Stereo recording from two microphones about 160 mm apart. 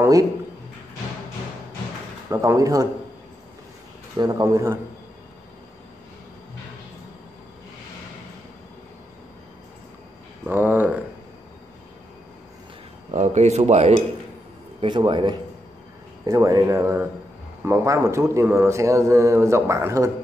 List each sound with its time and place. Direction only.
0.0 s a man's voice: 20° right (ahead or behind)
2.2 s speech: 15° right (ahead or behind)
4.2 s speech: 20° right (ahead or behind)
10.4 s speech: 10° right (ahead or behind)
13.1 s speech: 45° right (ahead or behind)
14.8 s speech: 30° right (ahead or behind)